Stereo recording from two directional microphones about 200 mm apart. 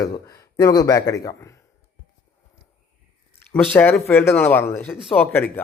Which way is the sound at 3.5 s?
10° left (ahead or behind).